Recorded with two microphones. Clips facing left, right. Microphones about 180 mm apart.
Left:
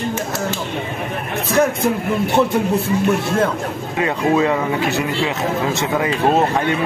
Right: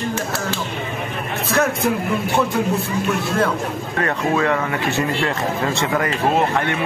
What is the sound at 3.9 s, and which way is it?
A man's voice, 15° left (ahead or behind).